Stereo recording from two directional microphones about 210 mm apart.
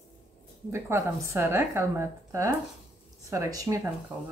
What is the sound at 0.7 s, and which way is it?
A woman's voice, 10° right (ahead or behind).